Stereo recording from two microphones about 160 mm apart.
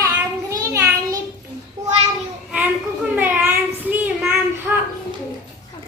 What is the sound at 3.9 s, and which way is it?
Child singing, 10° right (ahead or behind).